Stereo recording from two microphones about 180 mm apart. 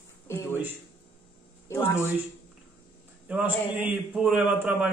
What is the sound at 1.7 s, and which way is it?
Speech, 15° left (ahead or behind).